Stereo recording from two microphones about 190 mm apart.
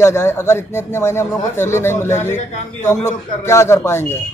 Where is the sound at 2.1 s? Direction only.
40° left (ahead or behind).